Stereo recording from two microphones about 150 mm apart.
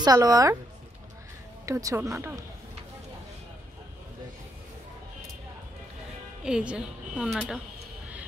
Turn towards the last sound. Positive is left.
turn(degrees=0)  # may be behind; listen again after turning